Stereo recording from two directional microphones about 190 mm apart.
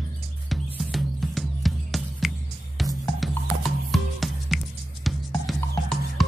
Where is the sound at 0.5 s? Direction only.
Centre (ahead or behind).